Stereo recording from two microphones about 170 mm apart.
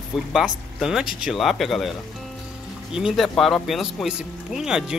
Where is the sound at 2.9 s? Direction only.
Centre (ahead or behind).